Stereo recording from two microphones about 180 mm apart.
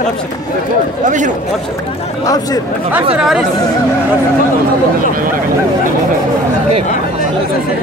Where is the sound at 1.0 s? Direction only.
45° right (ahead or behind).